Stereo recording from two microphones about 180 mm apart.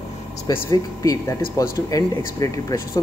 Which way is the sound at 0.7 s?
15° left (ahead or behind).